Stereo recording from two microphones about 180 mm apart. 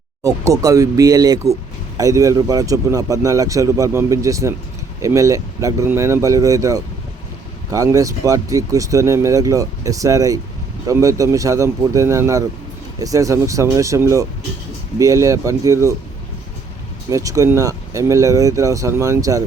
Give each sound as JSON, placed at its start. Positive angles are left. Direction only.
{"t": 0.2, "sound": "speech", "side_deg": -20}
{"t": 17.1, "sound": "speech", "side_deg": -20}